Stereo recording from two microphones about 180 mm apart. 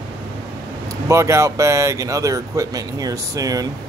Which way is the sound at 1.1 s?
15° right (ahead or behind).